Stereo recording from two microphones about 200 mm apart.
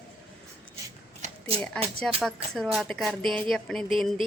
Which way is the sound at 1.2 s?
30° right (ahead or behind).